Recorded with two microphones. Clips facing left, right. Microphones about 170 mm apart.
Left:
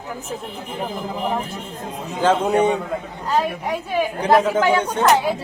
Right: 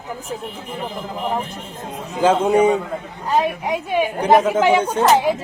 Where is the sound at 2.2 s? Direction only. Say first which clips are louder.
Right 2 dB; 10° right (ahead or behind).